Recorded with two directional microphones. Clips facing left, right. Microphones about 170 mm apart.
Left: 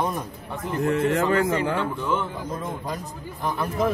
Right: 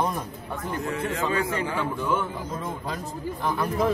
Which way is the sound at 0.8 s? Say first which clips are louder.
Left 8 dB; 65° left (ahead or behind).